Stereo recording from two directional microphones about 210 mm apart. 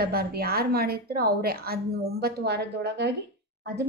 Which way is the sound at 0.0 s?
50° right (ahead or behind).